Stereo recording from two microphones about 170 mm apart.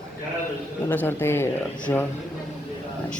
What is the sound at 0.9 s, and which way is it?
Speech, 10° left (ahead or behind).